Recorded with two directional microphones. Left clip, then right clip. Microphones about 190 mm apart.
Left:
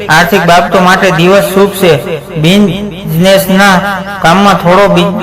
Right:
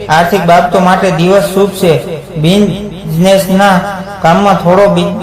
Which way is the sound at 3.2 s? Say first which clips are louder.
Left 2 dB; 15° left (ahead or behind).